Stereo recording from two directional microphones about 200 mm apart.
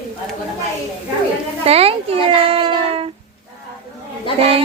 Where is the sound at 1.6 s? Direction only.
30° right (ahead or behind).